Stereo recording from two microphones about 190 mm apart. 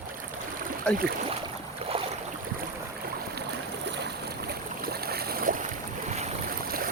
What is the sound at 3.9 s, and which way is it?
Boat, 60° right (ahead or behind).